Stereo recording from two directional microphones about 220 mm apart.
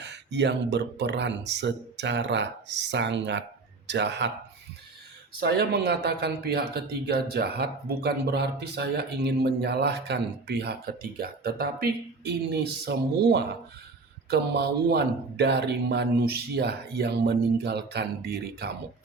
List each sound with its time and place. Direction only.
0.0 s speech: 50° right (ahead or behind)
5.4 s speech: 50° right (ahead or behind)